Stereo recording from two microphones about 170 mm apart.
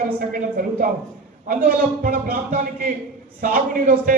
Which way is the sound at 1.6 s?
60° right (ahead or behind).